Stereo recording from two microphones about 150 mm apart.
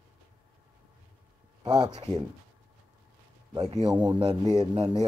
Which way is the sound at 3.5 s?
25° right (ahead or behind).